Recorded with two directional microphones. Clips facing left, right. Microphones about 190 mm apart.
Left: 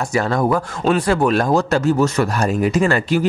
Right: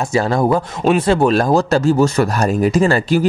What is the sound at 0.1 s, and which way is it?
Speech, 30° right (ahead or behind).